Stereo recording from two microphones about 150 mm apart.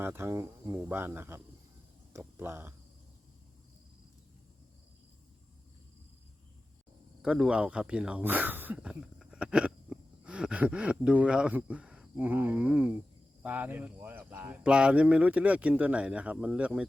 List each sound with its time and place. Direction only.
0.0 s speech: 15° right (ahead or behind)
7.2 s speech: 5° right (ahead or behind)